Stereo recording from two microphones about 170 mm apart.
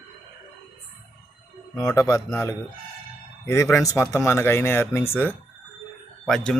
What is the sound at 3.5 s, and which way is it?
Speech, 15° left (ahead or behind).